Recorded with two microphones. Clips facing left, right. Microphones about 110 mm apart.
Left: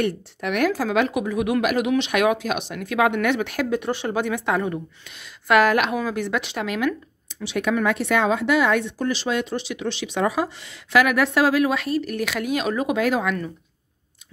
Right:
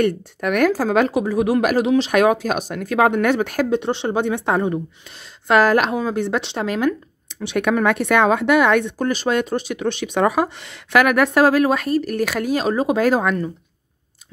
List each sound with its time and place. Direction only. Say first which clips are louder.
0.0 s speech: right 5 dB; 50° right (ahead or behind)
3.7 s speech: right 2 dB; 25° right (ahead or behind)
7.4 s speech: right 4 dB; 55° right (ahead or behind); by 13.4 s 40° right (ahead or behind)